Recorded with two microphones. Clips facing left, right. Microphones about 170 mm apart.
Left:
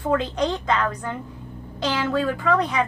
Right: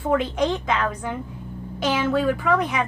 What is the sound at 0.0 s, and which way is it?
Speech, 10° right (ahead or behind).